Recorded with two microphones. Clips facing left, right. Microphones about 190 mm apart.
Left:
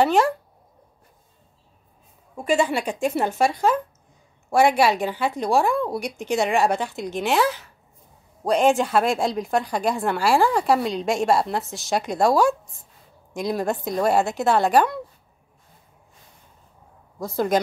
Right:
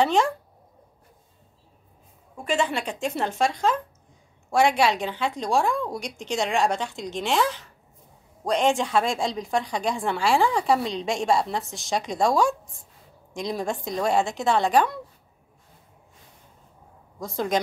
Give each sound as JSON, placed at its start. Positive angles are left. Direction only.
{"t": 0.0, "sound": "a woman's voice", "side_deg": 5}
{"t": 2.3, "sound": "a woman's voice", "side_deg": 10}
{"t": 17.2, "sound": "a woman's voice", "side_deg": 5}